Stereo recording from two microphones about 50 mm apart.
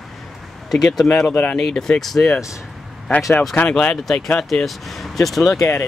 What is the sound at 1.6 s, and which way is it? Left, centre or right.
Speech, centre.